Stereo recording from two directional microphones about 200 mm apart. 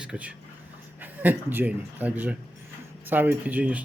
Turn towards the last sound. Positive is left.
turn(degrees=-5)  # may be behind; listen again after turning